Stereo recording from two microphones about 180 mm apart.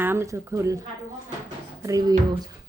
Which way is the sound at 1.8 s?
20° right (ahead or behind).